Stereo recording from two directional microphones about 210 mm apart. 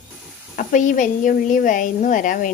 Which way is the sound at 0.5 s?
40° left (ahead or behind).